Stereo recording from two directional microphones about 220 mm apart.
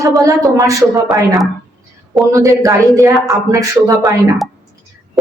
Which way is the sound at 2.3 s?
15° right (ahead or behind).